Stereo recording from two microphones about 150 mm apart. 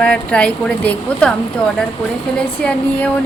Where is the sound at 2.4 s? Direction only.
5° left (ahead or behind).